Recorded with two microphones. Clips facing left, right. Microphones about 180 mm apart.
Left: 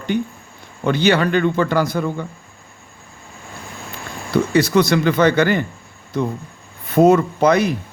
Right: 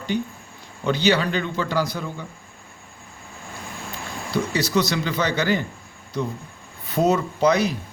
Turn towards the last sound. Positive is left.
turn(degrees=55)  # may be behind; listen again after turning